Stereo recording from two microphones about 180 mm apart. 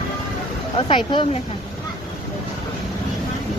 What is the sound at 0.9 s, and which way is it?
Speech, 25° left (ahead or behind).